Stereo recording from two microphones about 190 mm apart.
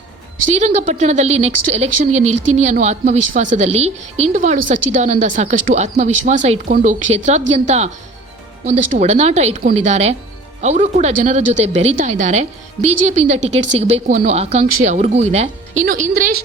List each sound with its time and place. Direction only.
0.5 s speech: 35° right (ahead or behind)
8.6 s speech: 35° right (ahead or behind)